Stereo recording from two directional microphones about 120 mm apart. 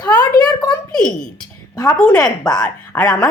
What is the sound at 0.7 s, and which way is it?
Speech, 5° left (ahead or behind).